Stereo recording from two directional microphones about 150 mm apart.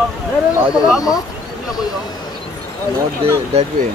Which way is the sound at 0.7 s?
5° right (ahead or behind).